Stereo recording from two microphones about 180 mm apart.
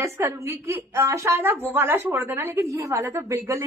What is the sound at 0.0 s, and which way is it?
A woman's voice, 15° right (ahead or behind).